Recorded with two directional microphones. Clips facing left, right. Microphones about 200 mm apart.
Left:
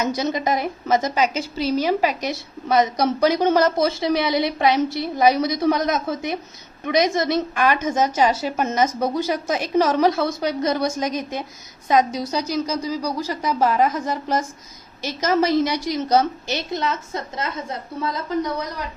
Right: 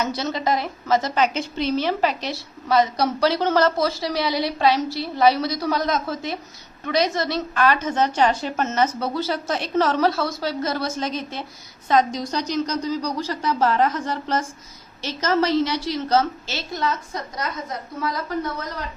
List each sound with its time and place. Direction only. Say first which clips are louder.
0.2 s a woman's voice: left 2 dB; 15° left (ahead or behind)
1.1 s a woman's voice: even; 5° left (ahead or behind)